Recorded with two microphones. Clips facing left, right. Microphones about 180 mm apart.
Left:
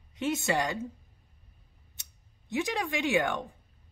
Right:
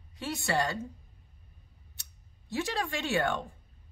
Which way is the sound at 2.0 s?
20° left (ahead or behind).